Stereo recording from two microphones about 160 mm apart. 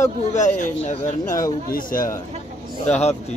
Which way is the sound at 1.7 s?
60° left (ahead or behind).